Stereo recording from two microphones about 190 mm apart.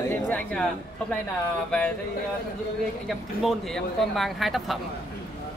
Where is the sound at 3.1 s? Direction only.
Centre (ahead or behind).